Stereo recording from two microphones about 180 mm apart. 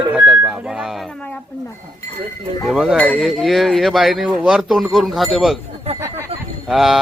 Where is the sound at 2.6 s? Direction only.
Centre (ahead or behind).